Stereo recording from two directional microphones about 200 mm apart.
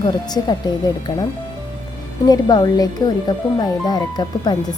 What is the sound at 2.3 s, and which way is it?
Speech, 20° left (ahead or behind).